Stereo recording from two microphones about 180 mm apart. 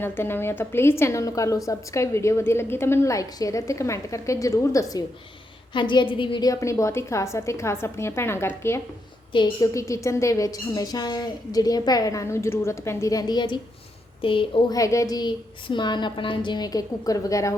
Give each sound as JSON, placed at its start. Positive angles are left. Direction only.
{"t": 0.0, "sound": "a woman's voice", "side_deg": 10}